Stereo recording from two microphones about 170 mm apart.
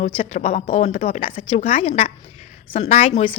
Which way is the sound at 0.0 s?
35° left (ahead or behind).